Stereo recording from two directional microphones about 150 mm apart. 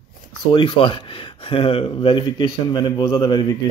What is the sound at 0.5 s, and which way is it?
Speech, 30° left (ahead or behind).